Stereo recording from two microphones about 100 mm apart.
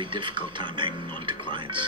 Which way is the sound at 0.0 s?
55° right (ahead or behind).